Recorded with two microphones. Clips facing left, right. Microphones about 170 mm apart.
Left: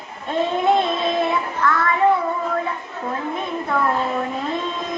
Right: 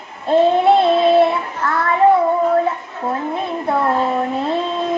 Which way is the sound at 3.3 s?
35° right (ahead or behind).